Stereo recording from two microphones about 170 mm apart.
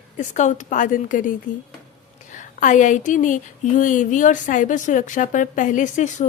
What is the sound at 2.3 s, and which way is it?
Speech, 50° left (ahead or behind).